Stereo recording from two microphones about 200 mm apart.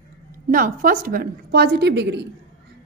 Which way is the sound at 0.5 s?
45° right (ahead or behind).